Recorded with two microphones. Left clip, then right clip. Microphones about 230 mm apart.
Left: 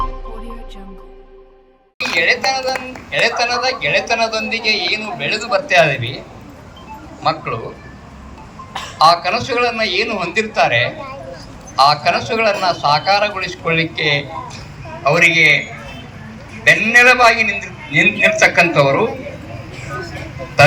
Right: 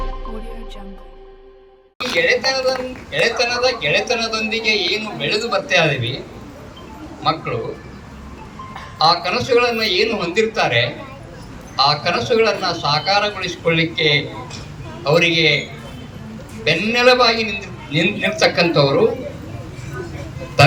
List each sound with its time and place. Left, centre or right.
2.1 s a man's voice: centre
7.2 s a man's voice: centre
9.0 s a man's voice: centre
16.6 s a man's voice: centre